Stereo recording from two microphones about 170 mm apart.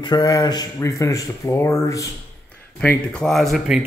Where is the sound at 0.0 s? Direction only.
25° left (ahead or behind).